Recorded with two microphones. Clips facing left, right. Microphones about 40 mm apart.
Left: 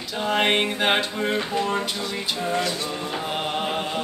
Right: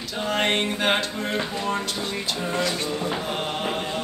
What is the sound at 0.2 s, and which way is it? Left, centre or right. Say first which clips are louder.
Music: left 2 dB; centre.